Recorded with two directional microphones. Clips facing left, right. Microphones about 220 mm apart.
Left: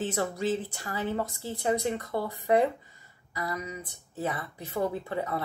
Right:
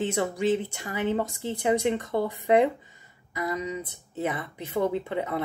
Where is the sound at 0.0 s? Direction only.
15° right (ahead or behind).